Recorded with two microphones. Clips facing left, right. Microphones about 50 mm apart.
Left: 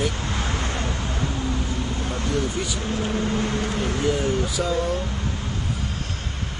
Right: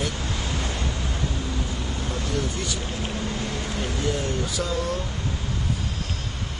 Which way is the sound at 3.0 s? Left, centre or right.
Left.